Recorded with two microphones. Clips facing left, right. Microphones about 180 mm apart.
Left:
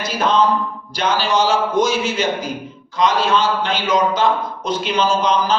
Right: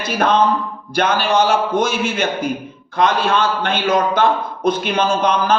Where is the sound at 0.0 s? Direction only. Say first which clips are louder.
Right 1 dB; 55° right (ahead or behind).